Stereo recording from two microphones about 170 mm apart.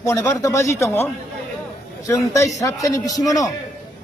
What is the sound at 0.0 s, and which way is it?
A man's voice, 20° left (ahead or behind).